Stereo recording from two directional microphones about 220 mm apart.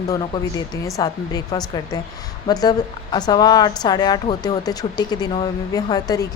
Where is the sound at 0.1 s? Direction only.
15° left (ahead or behind).